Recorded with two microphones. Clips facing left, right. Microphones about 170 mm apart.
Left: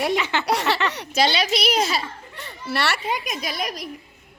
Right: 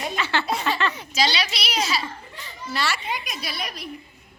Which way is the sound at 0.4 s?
75° left (ahead or behind).